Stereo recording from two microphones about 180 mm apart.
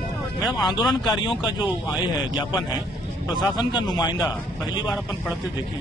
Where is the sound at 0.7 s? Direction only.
20° left (ahead or behind).